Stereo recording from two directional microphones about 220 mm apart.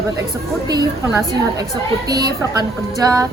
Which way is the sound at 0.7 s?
15° right (ahead or behind).